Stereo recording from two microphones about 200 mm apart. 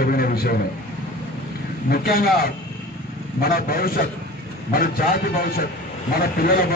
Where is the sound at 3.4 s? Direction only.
50° left (ahead or behind).